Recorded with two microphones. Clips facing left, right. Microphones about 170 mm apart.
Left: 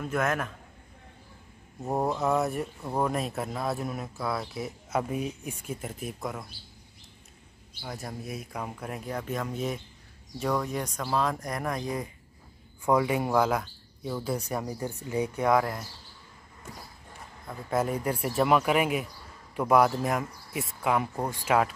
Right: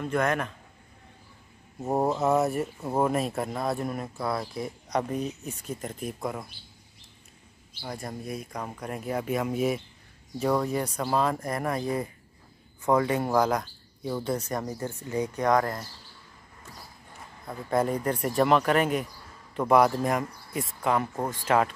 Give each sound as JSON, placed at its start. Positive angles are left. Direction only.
{"t": 0.0, "sound": "speech", "side_deg": 0}
{"t": 1.8, "sound": "speech", "side_deg": -20}
{"t": 2.4, "sound": "speech", "side_deg": 0}
{"t": 7.8, "sound": "speech", "side_deg": 0}
{"t": 9.1, "sound": "speech", "side_deg": -10}
{"t": 12.8, "sound": "speech", "side_deg": 10}
{"t": 17.5, "sound": "speech", "side_deg": 5}